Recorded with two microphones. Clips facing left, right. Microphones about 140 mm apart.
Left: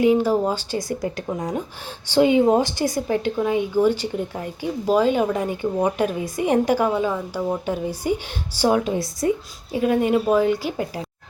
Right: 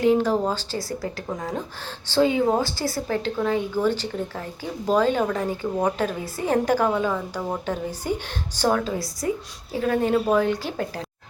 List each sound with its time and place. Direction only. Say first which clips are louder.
0.0 s a woman's voice: left 2 dB; 10° left (ahead or behind)
9.7 s a woman's voice: left 2 dB; 15° left (ahead or behind)